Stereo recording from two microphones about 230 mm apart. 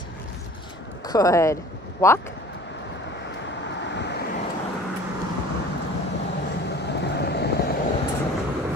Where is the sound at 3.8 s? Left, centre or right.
Left.